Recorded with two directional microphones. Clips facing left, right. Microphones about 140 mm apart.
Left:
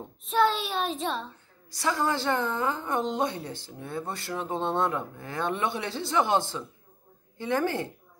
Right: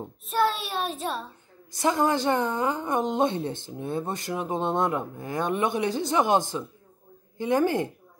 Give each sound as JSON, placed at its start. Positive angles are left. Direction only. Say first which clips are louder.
{"t": 0.3, "sound": "a child's voice", "louder": "left 1 dB", "side_deg": -5}
{"t": 1.7, "sound": "a woman's voice", "louder": "right 4 dB", "side_deg": -20}